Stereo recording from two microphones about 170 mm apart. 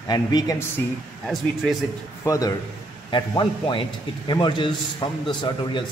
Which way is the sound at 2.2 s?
20° left (ahead or behind).